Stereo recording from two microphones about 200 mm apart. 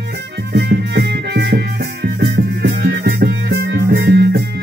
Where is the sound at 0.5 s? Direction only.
55° right (ahead or behind).